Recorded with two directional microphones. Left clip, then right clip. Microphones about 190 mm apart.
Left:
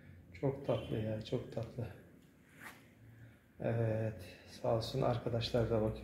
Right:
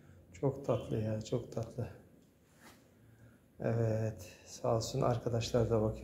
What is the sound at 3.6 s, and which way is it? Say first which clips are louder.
Speech: right 2 dB; 15° right (ahead or behind).